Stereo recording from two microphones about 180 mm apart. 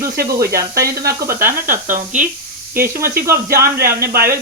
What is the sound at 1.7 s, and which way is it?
Speech, 50° right (ahead or behind).